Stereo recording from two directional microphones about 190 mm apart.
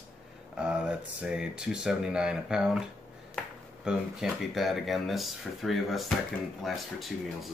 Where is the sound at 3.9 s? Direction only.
5° right (ahead or behind).